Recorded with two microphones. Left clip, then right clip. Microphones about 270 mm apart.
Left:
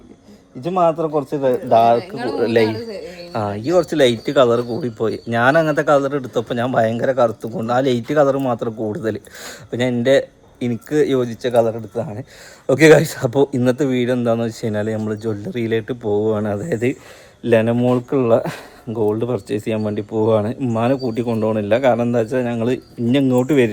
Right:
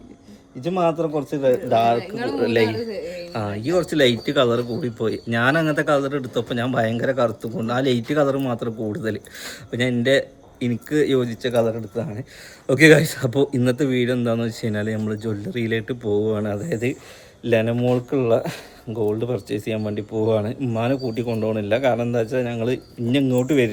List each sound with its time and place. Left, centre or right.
0.6 s speech: centre
2.0 s speech: centre
2.4 s a man's voice: centre